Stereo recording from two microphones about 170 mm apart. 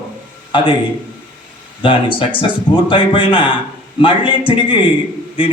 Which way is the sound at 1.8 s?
30° left (ahead or behind).